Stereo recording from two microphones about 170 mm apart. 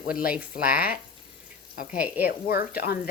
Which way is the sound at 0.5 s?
60° left (ahead or behind).